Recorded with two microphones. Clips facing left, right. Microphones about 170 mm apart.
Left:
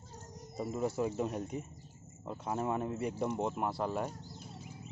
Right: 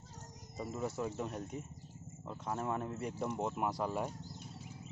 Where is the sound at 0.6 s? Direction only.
Centre (ahead or behind).